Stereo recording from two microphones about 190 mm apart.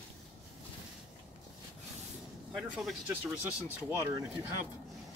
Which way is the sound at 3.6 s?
20° right (ahead or behind).